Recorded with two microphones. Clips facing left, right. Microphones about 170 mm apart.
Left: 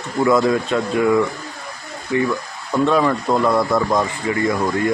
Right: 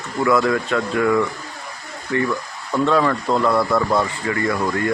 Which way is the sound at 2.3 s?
15° left (ahead or behind).